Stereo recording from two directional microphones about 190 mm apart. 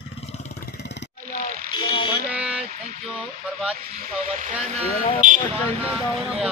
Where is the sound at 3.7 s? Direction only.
50° right (ahead or behind).